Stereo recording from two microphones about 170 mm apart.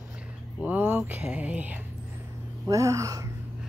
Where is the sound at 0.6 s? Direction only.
10° right (ahead or behind).